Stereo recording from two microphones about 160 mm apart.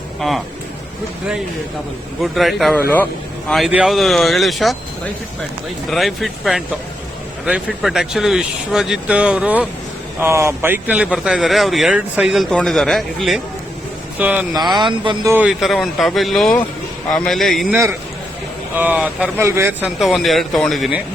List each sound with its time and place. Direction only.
0.2 s speech: centre (ahead or behind)
2.2 s speech: centre (ahead or behind)
14.8 s speech: 30° right (ahead or behind)
15.3 s speech: 5° right (ahead or behind)
18.7 s speech: 10° right (ahead or behind)
20.0 s speech: centre (ahead or behind)